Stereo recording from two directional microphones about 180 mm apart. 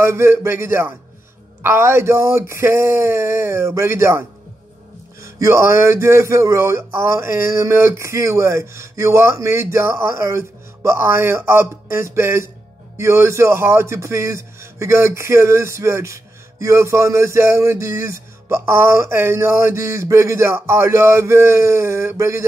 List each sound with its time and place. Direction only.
0.0 s speech: 15° right (ahead or behind)